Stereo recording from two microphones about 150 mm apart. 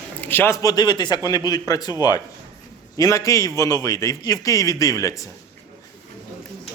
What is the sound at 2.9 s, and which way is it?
A man's voice, 20° left (ahead or behind).